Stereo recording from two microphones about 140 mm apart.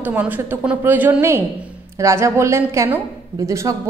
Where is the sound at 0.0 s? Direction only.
10° right (ahead or behind).